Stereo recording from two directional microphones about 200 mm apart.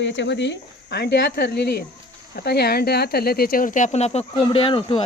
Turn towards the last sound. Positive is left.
turn(degrees=25)  # may be behind; listen again after turning